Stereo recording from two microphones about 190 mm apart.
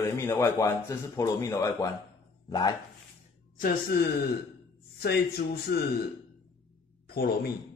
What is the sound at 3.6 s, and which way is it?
Speech, 50° left (ahead or behind).